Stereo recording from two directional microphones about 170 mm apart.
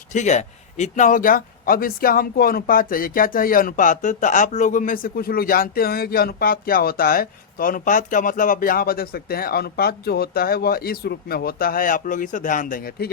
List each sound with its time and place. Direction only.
0.1 s speech: 45° left (ahead or behind)